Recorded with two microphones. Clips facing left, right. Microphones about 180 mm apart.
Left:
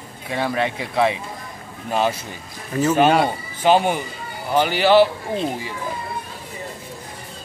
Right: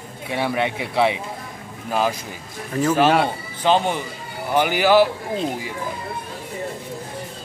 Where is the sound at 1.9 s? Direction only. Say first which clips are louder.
Left 1 dB; 5° right (ahead or behind).